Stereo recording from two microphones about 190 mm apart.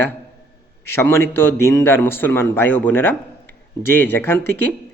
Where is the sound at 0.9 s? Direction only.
15° left (ahead or behind).